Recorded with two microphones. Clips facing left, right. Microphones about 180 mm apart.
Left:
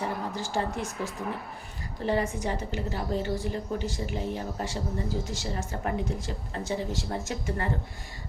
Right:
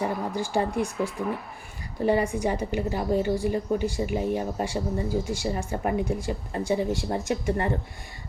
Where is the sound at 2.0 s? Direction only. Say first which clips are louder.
Right 5 dB; 10° right (ahead or behind).